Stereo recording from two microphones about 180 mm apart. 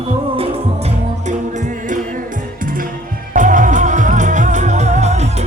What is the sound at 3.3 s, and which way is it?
Music, 45° right (ahead or behind).